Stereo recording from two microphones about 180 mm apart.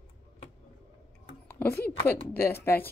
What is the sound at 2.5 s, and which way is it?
Speech, 10° left (ahead or behind).